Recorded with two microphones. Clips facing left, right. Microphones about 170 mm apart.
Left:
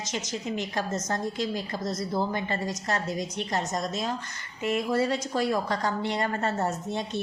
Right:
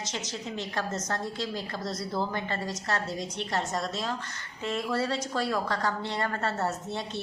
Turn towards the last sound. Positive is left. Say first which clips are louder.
# left 2 dB
turn(degrees=15)  # may be behind; listen again after turning